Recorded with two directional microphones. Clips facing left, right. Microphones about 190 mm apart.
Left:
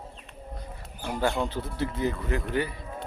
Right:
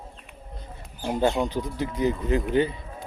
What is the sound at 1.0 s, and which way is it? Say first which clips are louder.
Speech: right 4 dB; 20° right (ahead or behind).